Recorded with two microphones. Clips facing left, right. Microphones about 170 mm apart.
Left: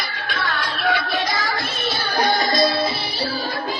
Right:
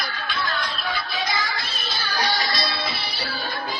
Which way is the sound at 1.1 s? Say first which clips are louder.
Left 4 dB; 50° left (ahead or behind).